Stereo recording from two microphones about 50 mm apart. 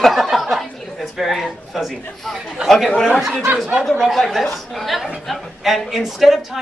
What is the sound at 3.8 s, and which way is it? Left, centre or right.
A woman's voice, centre.